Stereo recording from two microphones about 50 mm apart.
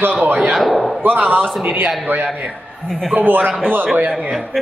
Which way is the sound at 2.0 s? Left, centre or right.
Right.